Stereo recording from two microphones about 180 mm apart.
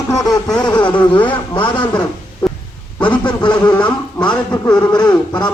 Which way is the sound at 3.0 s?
25° left (ahead or behind).